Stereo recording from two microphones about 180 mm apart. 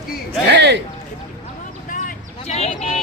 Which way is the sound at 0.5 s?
70° right (ahead or behind).